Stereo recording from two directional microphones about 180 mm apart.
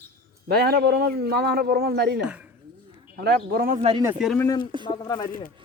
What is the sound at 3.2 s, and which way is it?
Speech, 60° right (ahead or behind).